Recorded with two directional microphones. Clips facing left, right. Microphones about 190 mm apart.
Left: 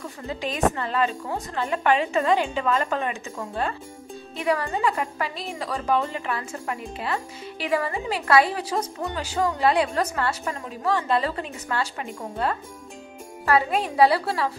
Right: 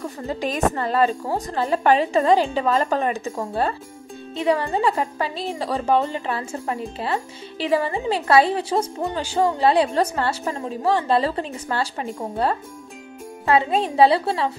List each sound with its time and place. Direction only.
0.3 s speech: 40° right (ahead or behind); by 14.5 s 25° right (ahead or behind)